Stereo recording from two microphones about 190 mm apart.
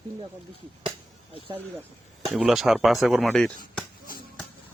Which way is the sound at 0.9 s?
30° right (ahead or behind).